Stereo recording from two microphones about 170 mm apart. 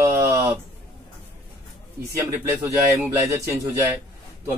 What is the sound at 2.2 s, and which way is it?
Speech, 20° right (ahead or behind).